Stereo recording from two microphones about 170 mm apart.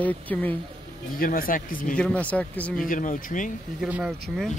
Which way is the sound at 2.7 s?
55° left (ahead or behind).